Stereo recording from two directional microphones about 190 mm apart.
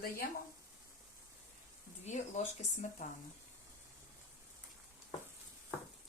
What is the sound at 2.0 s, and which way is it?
Speech, 40° left (ahead or behind).